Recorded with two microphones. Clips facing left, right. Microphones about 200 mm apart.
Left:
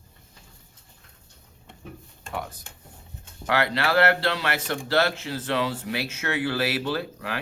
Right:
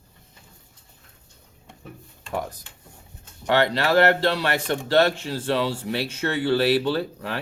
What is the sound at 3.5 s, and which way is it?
Speech, 35° right (ahead or behind).